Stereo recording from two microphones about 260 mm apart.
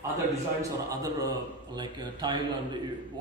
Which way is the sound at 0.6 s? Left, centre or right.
Centre.